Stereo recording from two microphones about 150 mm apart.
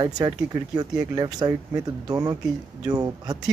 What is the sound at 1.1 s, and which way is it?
Speech, 30° right (ahead or behind).